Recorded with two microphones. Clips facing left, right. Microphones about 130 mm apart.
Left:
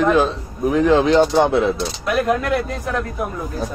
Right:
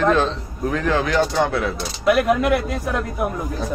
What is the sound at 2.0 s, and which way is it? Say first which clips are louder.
Speech: right 4 dB; 10° right (ahead or behind).